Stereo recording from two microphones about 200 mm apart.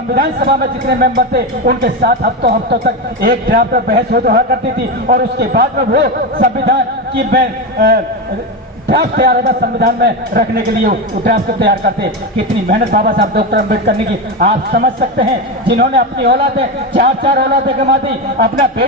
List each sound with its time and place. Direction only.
0.1 s speech: 50° right (ahead or behind)
9.1 s a man's voice: 50° right (ahead or behind)
16.6 s speech: 45° right (ahead or behind)